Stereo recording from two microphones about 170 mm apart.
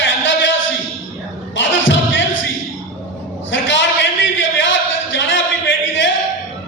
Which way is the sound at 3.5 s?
90° left.